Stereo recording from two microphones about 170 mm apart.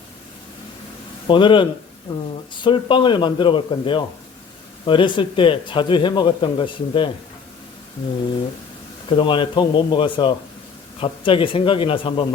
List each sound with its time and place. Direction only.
1.3 s a man's voice: 30° left (ahead or behind)
9.0 s a man's voice: 30° left (ahead or behind)